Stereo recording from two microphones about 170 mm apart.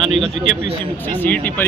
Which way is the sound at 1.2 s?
10° left (ahead or behind).